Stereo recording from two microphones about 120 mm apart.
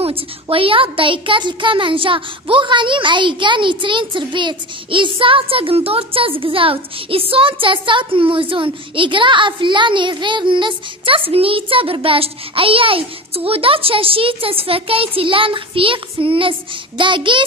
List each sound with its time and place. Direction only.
0.0 s a child's voice: 50° right (ahead or behind)